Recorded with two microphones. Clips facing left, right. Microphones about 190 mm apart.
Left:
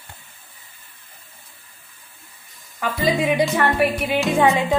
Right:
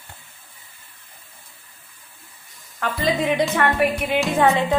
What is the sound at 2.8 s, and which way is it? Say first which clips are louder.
Music: left 1 dB; 5° left (ahead or behind).